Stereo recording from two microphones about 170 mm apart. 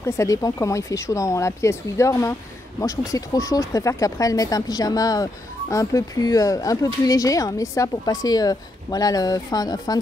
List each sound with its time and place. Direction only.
0.0 s speech: 20° left (ahead or behind)